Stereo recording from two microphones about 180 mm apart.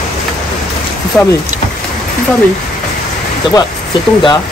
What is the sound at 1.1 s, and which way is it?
Speech, 5° left (ahead or behind).